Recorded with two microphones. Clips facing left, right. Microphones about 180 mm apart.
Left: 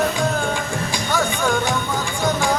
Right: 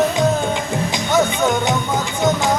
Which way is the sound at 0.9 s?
20° right (ahead or behind).